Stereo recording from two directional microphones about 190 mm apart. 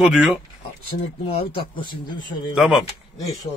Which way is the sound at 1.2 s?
25° left (ahead or behind).